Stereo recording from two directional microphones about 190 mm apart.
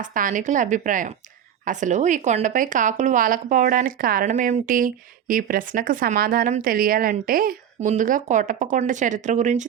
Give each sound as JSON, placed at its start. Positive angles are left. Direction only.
{"t": 0.0, "sound": "a woman's voice", "side_deg": -45}